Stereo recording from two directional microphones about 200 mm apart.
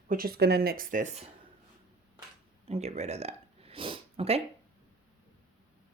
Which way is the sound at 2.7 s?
30° right (ahead or behind).